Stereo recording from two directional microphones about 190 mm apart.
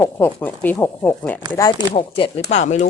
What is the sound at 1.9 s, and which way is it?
Speech, 30° left (ahead or behind).